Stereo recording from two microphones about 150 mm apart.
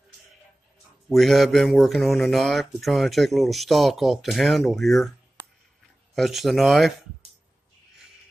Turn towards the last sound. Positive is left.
turn(degrees=0)  # may be behind; listen again after turning